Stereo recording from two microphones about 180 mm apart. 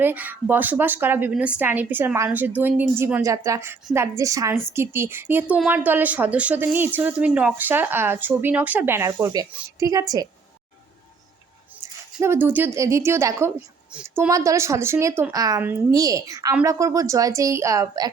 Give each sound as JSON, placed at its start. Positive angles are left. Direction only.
{"t": 0.0, "sound": "a woman's voice", "side_deg": -10}
{"t": 12.2, "sound": "a woman's voice", "side_deg": -15}